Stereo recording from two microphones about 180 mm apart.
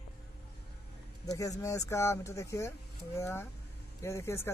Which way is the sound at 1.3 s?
20° left (ahead or behind).